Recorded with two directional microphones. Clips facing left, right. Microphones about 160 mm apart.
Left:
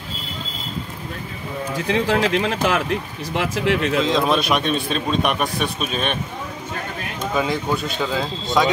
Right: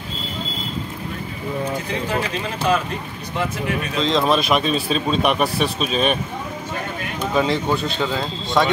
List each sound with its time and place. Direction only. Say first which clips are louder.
1.9 s speech: left 5 dB; 90° left
4.0 s speech: even; centre (ahead or behind)
7.3 s speech: right 2 dB; centre (ahead or behind)